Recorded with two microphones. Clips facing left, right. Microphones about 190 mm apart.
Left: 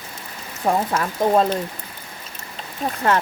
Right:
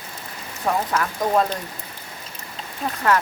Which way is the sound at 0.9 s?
25° left (ahead or behind).